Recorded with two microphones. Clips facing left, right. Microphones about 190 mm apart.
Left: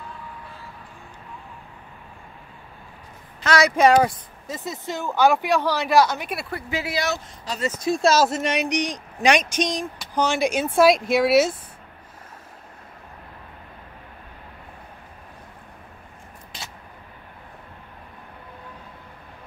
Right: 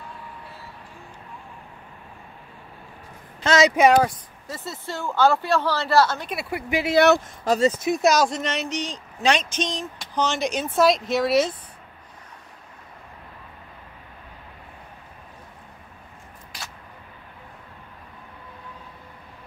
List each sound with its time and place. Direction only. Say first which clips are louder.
3.4 s speech: right 2 dB; 20° right (ahead or behind)
3.7 s speech: left 4 dB; centre (ahead or behind)
4.5 s speech: left 3 dB; 15° left (ahead or behind)
6.5 s speech: right 7 dB; 15° right (ahead or behind)
7.0 s speech: right 10 dB; 65° right (ahead or behind)
7.6 s speech: left 1 dB; 20° right (ahead or behind)
8.2 s speech: left 2 dB; 5° left (ahead or behind)